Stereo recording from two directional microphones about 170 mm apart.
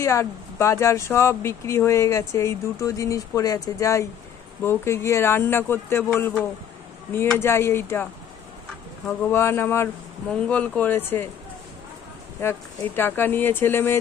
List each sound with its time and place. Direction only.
0.0 s speech: 15° left (ahead or behind)
9.2 s speech: 15° left (ahead or behind)
12.4 s speech: 15° left (ahead or behind)